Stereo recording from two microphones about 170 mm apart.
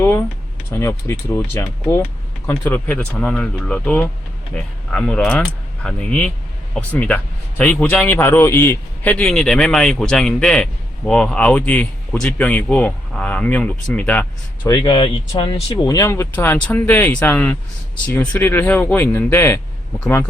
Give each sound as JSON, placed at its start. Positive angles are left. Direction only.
{"t": 0.0, "sound": "a man's voice", "side_deg": 15}
{"t": 14.7, "sound": "a man's voice", "side_deg": 25}